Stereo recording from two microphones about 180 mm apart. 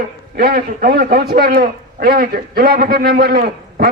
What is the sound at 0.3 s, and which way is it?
A man's voice, 55° right (ahead or behind).